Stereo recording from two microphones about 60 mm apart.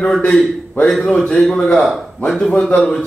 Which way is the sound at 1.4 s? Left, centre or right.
Centre.